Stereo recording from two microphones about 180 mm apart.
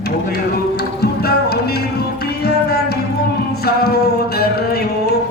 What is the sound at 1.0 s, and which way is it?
Music, 60° left (ahead or behind).